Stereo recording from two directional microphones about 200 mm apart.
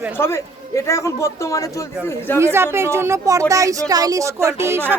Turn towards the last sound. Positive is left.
turn(degrees=-10)  # may be behind; listen again after turning